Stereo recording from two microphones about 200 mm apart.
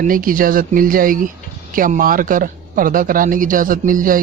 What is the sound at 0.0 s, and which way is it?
Speech, 45° right (ahead or behind).